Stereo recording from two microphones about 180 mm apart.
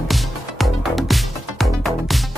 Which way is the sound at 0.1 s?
Centre (ahead or behind).